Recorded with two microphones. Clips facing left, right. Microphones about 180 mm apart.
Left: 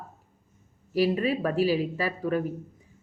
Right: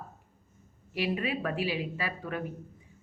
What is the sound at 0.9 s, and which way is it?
Speech, 40° left (ahead or behind).